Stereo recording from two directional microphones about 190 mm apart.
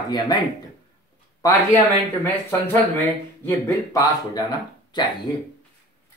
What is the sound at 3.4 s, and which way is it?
Speech, 20° left (ahead or behind).